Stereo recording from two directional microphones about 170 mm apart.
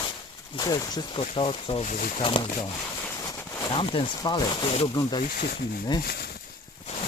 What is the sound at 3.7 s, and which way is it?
Speech, 30° left (ahead or behind).